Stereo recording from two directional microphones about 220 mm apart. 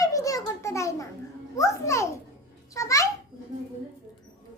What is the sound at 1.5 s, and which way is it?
A child's voice, 15° left (ahead or behind).